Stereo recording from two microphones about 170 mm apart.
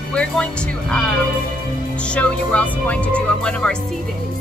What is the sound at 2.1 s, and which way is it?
Speech, 10° left (ahead or behind).